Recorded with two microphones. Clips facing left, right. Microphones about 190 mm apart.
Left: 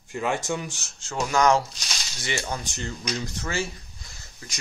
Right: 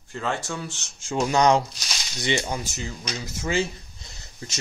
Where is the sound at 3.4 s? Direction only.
20° right (ahead or behind).